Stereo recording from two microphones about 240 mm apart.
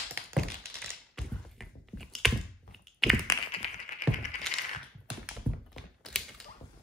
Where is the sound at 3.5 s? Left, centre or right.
Left.